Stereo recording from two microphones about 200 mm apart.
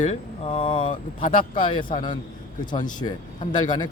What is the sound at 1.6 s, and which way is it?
Speech, 25° left (ahead or behind).